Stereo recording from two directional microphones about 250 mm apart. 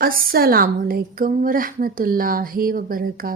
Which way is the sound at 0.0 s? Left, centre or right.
Right.